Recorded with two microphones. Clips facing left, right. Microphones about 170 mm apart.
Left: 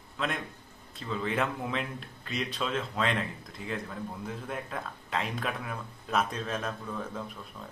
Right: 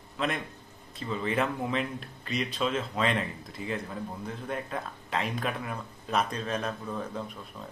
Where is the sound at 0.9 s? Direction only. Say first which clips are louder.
Right 2 dB; 5° right (ahead or behind).